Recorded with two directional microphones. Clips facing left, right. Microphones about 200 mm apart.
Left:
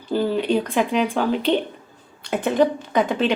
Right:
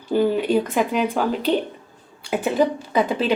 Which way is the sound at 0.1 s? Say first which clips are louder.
Right 2 dB; 10° right (ahead or behind).